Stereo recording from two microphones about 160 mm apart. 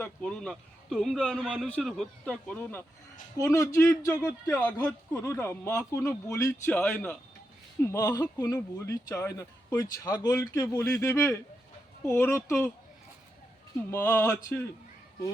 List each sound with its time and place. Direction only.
0.0 s speech: 5° left (ahead or behind)
1.6 s speech: 5° left (ahead or behind)
3.3 s speech: 20° left (ahead or behind)
7.9 s speech: 20° left (ahead or behind)
13.9 s speech: 15° left (ahead or behind)